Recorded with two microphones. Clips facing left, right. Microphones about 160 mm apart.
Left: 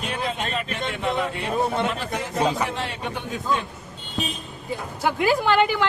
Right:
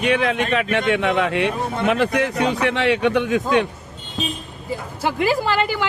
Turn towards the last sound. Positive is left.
turn(degrees=-5)  # may be behind; listen again after turning